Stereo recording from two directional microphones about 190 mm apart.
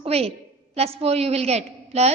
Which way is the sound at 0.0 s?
30° right (ahead or behind).